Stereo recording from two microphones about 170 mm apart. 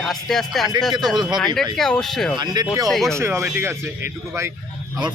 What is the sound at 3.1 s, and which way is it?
Speech, 15° right (ahead or behind).